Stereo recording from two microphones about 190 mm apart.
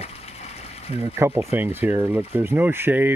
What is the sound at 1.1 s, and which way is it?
Speech, 15° right (ahead or behind).